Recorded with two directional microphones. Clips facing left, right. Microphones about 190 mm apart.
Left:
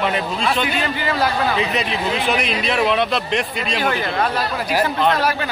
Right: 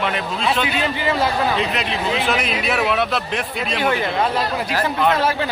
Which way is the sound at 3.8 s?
25° right (ahead or behind).